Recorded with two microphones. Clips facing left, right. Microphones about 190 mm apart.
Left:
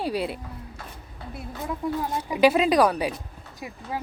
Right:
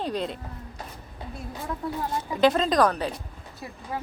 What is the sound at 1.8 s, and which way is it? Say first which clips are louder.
Speech: left 3 dB; 10° left (ahead or behind).